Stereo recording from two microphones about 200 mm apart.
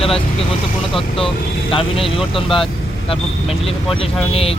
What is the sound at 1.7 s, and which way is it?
Speech, 25° left (ahead or behind).